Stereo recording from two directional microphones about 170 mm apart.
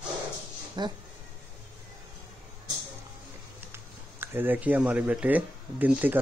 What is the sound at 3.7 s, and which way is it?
Speech, 15° right (ahead or behind).